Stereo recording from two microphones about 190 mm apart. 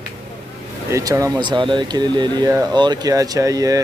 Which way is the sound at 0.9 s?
15° right (ahead or behind).